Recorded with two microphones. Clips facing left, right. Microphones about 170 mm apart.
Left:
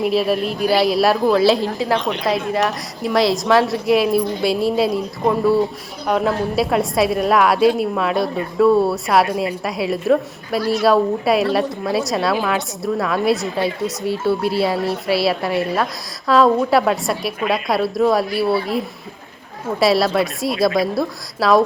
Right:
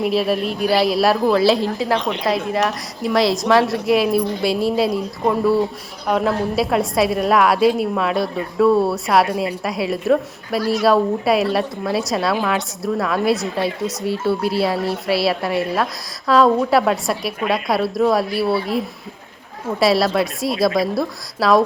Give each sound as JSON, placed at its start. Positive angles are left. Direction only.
{"t": 0.0, "sound": "a woman's voice", "side_deg": 0}
{"t": 19.8, "sound": "a woman's voice", "side_deg": 0}